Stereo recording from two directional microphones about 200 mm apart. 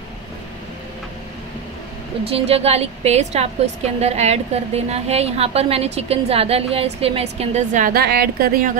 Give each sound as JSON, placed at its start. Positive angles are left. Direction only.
{"t": 2.2, "sound": "a woman's voice", "side_deg": -30}